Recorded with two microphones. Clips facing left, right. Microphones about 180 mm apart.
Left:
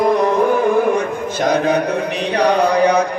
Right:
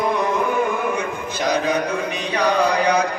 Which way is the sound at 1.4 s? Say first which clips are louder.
Left 4 dB; 55° left (ahead or behind).